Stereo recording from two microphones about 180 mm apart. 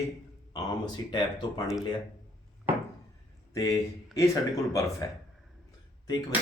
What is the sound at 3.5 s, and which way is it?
Speech, 20° left (ahead or behind).